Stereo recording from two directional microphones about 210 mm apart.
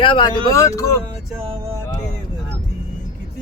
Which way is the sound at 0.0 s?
20° left (ahead or behind).